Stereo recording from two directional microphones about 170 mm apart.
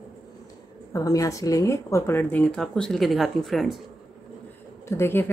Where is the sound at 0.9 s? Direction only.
20° left (ahead or behind); by 3.8 s centre (ahead or behind).